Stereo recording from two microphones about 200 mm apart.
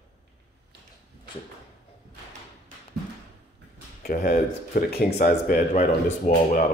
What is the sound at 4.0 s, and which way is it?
Speech, 50° left (ahead or behind).